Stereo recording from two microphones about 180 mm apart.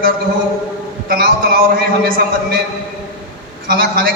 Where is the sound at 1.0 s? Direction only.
55° right (ahead or behind).